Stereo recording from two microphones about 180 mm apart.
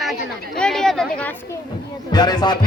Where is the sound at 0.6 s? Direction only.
5° left (ahead or behind).